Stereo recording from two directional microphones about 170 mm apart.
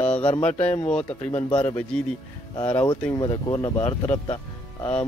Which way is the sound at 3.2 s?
25° left (ahead or behind).